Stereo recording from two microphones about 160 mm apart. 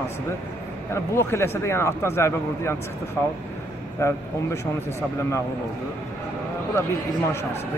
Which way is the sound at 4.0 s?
15° left (ahead or behind).